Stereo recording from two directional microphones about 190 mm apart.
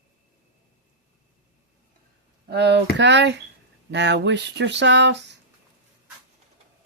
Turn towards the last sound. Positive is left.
turn(degrees=-65)  # may be behind; listen again after turning